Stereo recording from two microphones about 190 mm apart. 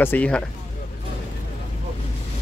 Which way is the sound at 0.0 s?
10° left (ahead or behind).